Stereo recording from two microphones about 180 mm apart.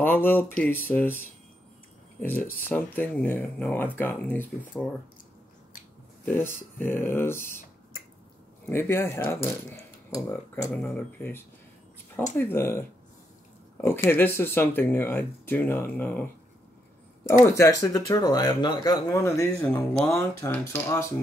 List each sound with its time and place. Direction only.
0.0 s speech: 10° left (ahead or behind)
6.2 s speech: 10° left (ahead or behind)
8.6 s speech: 15° left (ahead or behind)
10.7 s speech: 10° left (ahead or behind)
17.5 s speech: 15° left (ahead or behind)